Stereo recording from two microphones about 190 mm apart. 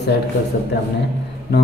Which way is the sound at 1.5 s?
60° left (ahead or behind).